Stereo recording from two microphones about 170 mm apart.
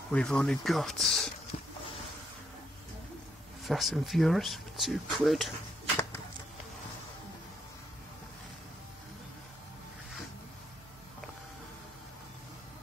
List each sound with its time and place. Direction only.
0.1 s speech: 5° left (ahead or behind)
1.5 s a sound: 35° left (ahead or behind)
3.6 s speech: centre (ahead or behind)